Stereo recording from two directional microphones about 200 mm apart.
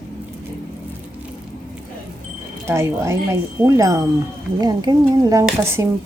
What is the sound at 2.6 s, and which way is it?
A woman's voice, 15° right (ahead or behind).